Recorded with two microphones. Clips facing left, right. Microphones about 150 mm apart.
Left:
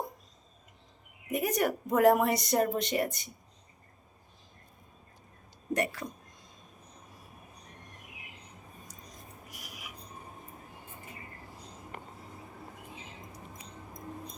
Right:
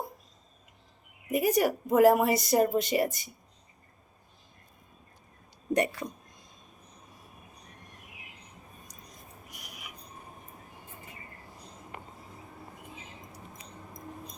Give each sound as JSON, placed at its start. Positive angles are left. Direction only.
{"t": 1.3, "sound": "a woman's voice", "side_deg": -5}
{"t": 5.7, "sound": "speech", "side_deg": -20}
{"t": 9.5, "sound": "a sound", "side_deg": 5}